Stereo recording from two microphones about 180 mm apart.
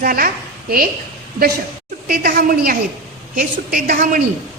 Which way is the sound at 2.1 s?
55° right (ahead or behind).